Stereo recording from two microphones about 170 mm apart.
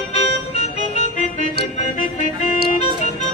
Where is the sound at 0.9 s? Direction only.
40° left (ahead or behind).